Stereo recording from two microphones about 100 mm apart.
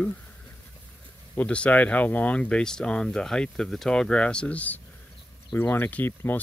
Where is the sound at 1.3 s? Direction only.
10° left (ahead or behind).